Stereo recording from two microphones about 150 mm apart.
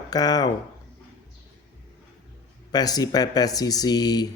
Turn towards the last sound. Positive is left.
turn(degrees=25)  # may be behind; listen again after turning